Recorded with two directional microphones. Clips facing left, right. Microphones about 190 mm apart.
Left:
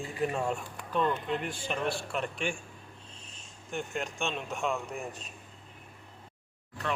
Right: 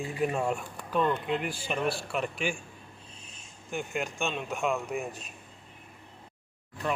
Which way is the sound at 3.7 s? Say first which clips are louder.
Right 2 dB; 5° right (ahead or behind).